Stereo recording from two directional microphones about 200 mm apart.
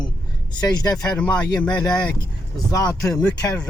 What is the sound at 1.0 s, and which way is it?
Speech, 5° left (ahead or behind).